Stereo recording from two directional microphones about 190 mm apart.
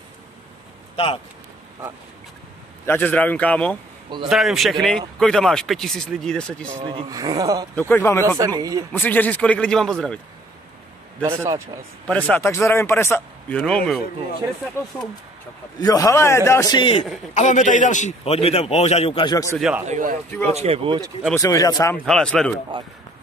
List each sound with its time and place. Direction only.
0.9 s speech: 30° left (ahead or behind)
2.9 s speech: 10° left (ahead or behind)
6.7 s speech: 25° right (ahead or behind)
7.9 s speech: 10° left (ahead or behind)
8.4 s speech: 20° right (ahead or behind)
8.9 s speech: 10° left (ahead or behind)
11.2 s a man's voice: 15° right (ahead or behind)
12.1 s speech: 5° left (ahead or behind); by 17.0 s 25° left (ahead or behind)
17.3 s a man's voice: 40° left (ahead or behind); by 19.6 s 15° left (ahead or behind)
19.9 s a man's voice: 45° right (ahead or behind)
20.4 s speech: 35° right (ahead or behind)
21.4 s speech: 20° left (ahead or behind)
22.0 s speech: 5° left (ahead or behind)